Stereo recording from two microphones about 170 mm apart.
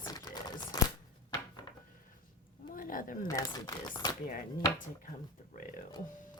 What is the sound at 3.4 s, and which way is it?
Speech, 20° left (ahead or behind).